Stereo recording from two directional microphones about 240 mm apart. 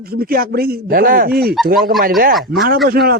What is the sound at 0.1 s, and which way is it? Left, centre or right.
A man's voice, right.